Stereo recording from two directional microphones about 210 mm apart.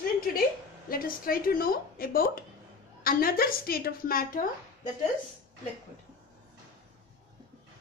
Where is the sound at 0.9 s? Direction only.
45° left (ahead or behind).